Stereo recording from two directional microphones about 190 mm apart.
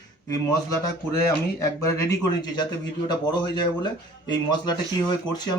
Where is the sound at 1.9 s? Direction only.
20° left (ahead or behind).